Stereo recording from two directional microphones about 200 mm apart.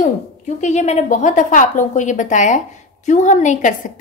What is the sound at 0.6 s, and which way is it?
A woman's voice, 35° left (ahead or behind).